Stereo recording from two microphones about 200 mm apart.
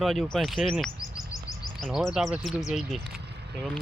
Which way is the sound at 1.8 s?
Centre (ahead or behind).